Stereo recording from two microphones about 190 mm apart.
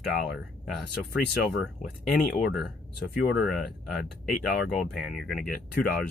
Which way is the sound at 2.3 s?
55° left (ahead or behind).